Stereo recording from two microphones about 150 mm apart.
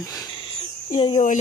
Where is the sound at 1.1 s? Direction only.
55° left (ahead or behind).